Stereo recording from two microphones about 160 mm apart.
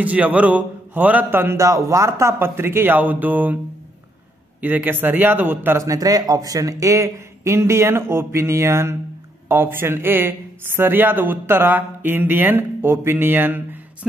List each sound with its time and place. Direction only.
0.0 s speech: 10° right (ahead or behind)
4.6 s speech: 10° right (ahead or behind)